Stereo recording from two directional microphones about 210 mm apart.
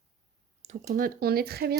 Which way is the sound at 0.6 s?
30° right (ahead or behind).